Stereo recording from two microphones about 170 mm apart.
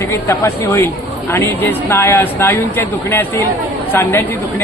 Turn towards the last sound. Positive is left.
turn(degrees=15)  # may be behind; listen again after turning